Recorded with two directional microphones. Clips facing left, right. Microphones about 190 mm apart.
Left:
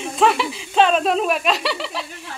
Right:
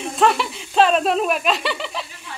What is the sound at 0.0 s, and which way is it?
Speech, centre (ahead or behind).